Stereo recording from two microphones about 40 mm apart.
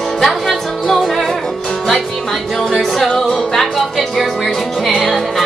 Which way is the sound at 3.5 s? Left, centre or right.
Centre.